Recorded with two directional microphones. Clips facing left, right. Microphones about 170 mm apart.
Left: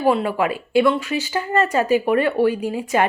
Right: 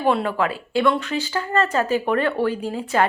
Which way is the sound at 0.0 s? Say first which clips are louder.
Left 2 dB; 5° left (ahead or behind).